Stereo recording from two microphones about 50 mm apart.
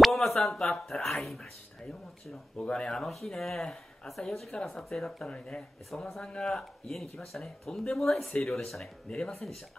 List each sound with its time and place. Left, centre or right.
0.0 s speech: centre
2.5 s speech: centre
2.9 s speech: centre
5.3 s speech: centre
6.2 s speech: centre